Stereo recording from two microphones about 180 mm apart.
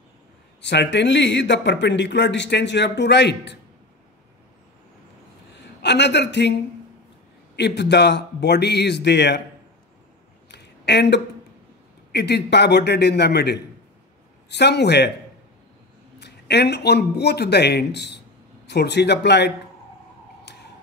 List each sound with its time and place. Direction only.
0.6 s speech: 80° left
5.6 s a woman's voice: 70° left (ahead or behind)
7.5 s speech: 70° left (ahead or behind)
10.5 s a sound: 70° left (ahead or behind)
12.1 s speech: 70° left (ahead or behind)
16.2 s speech: 70° left (ahead or behind)
20.5 s tick-tock: 75° left (ahead or behind)